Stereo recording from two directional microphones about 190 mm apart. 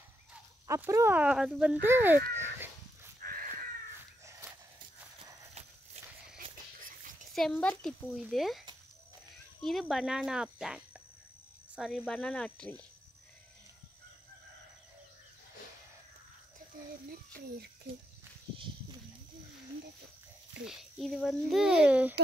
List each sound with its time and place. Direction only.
0.3 s speech: 10° right (ahead or behind)
2.3 s a sound: 10° right (ahead or behind)
3.2 s crow: 50° right (ahead or behind)
7.3 s speech: 5° left (ahead or behind)
20.6 s speech: centre (ahead or behind)